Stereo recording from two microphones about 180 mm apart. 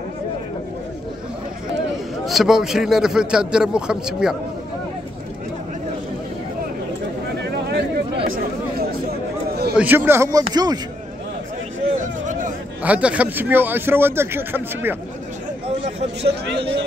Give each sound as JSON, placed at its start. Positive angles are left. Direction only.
{"t": 2.2, "sound": "a man's voice", "side_deg": 0}
{"t": 7.7, "sound": "chatter", "side_deg": -65}
{"t": 9.8, "sound": "speech", "side_deg": -10}
{"t": 12.0, "sound": "a sound", "side_deg": -45}
{"t": 12.8, "sound": "speech", "side_deg": -10}
{"t": 16.2, "sound": "a man's voice", "side_deg": -70}